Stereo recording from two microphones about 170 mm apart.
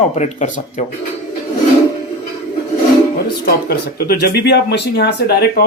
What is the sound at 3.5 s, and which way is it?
Speech, 65° left (ahead or behind).